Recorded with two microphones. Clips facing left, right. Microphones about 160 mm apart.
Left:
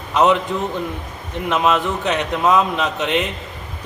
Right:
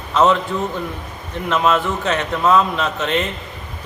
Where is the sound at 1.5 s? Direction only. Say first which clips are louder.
Right 1 dB; 15° left (ahead or behind).